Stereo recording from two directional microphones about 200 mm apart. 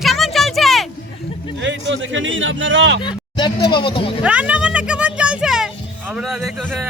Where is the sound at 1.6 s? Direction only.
65° right (ahead or behind).